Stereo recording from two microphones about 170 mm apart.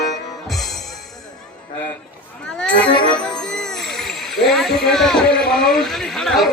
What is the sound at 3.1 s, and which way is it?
Speech, 5° left (ahead or behind).